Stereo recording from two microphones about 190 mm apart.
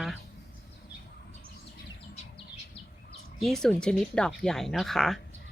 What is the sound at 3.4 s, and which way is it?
Speech, centre (ahead or behind).